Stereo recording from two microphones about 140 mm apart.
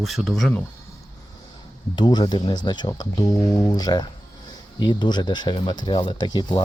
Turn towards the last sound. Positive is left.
turn(degrees=30)  # may be behind; listen again after turning